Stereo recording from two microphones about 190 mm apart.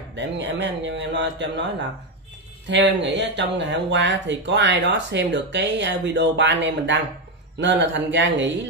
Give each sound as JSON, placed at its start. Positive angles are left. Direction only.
{"t": 0.1, "sound": "speech", "side_deg": -70}
{"t": 2.7, "sound": "speech", "side_deg": -70}